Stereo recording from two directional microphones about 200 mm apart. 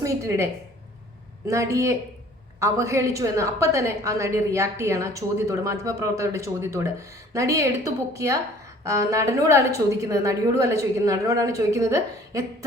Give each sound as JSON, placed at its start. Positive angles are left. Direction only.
{"t": 0.0, "sound": "a woman's voice", "side_deg": -15}
{"t": 1.5, "sound": "a woman's voice", "side_deg": -15}